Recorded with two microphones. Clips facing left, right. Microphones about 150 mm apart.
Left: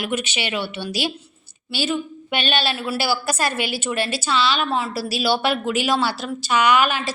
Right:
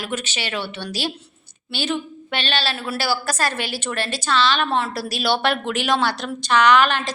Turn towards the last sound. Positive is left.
turn(degrees=10)  # may be behind; listen again after turning